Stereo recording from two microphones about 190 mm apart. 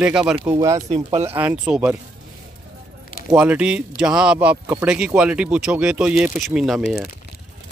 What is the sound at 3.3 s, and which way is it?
Speech, 5° right (ahead or behind).